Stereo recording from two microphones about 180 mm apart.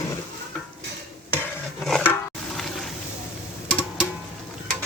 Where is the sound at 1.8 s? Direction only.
5° left (ahead or behind).